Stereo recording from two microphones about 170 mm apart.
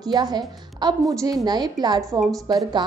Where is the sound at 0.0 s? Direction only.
25° right (ahead or behind).